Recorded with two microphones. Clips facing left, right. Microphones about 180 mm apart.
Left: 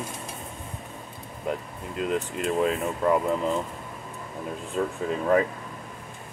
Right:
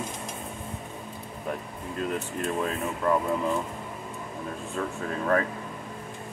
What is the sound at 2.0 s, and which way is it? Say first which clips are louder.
Speech: left 3 dB; 20° left (ahead or behind).